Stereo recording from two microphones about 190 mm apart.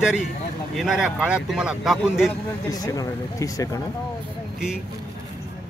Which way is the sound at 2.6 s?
20° left (ahead or behind).